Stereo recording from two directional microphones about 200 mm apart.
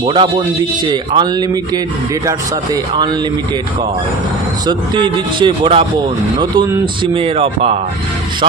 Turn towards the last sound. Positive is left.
turn(degrees=-30)  # may be behind; listen again after turning